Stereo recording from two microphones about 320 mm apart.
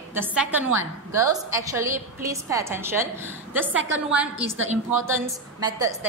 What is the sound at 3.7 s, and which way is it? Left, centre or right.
Speech, right.